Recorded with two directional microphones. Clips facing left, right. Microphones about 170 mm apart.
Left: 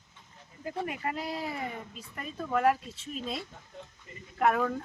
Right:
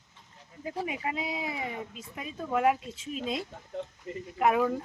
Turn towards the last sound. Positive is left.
turn(degrees=-5)  # may be behind; listen again after turning